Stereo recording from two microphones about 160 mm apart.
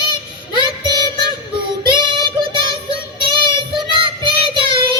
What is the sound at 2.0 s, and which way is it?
Child singing, 30° right (ahead or behind).